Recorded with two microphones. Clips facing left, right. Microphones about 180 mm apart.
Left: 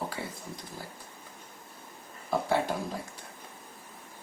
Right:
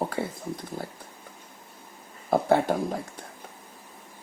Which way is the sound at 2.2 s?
55° right (ahead or behind).